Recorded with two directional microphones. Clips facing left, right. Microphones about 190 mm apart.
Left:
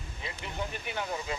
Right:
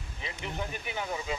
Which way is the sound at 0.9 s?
5° right (ahead or behind).